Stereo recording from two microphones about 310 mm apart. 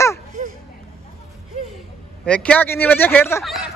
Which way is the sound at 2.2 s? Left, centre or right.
Centre.